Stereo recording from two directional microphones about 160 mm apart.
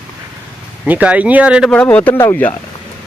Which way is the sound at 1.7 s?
10° left (ahead or behind).